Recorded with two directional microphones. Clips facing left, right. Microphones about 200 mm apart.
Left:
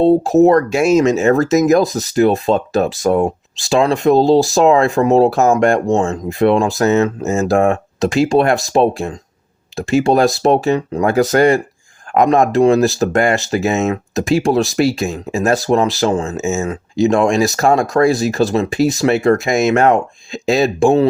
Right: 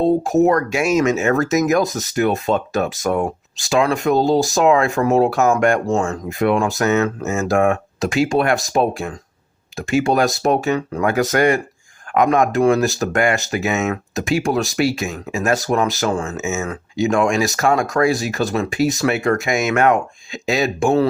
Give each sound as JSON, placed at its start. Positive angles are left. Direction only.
{"t": 0.0, "sound": "speech", "side_deg": 35}